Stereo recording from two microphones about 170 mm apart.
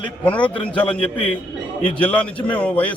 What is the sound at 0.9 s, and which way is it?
Speech, 35° left (ahead or behind).